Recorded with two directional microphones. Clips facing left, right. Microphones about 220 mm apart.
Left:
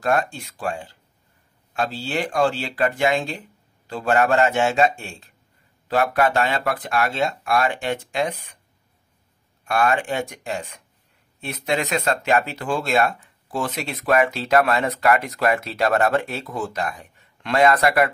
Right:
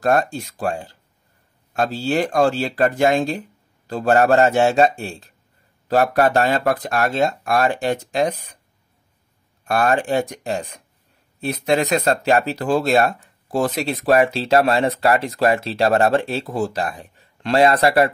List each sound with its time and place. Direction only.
0.0 s speech: 40° right (ahead or behind)
9.7 s speech: 40° right (ahead or behind)